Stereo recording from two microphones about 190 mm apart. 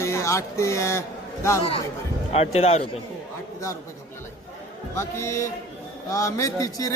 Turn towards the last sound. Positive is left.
turn(degrees=20)  # may be behind; listen again after turning